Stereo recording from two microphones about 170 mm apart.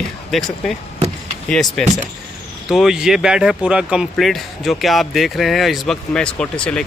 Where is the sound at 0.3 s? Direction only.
Centre (ahead or behind).